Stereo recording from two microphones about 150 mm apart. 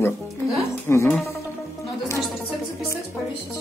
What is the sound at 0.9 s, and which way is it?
Insect, 15° left (ahead or behind).